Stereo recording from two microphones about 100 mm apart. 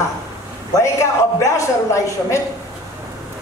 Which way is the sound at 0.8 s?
30° left (ahead or behind).